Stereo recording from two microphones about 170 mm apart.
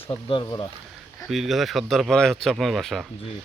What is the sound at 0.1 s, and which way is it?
Speech, 25° left (ahead or behind).